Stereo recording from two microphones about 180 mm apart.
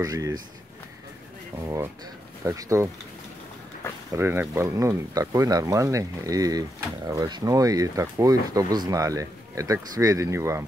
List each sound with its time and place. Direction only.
0.0 s speech: 20° right (ahead or behind)
1.6 s speech: 15° right (ahead or behind)
4.1 s speech: 15° right (ahead or behind)